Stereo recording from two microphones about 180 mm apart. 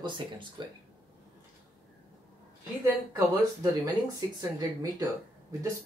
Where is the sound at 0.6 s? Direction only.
25° right (ahead or behind).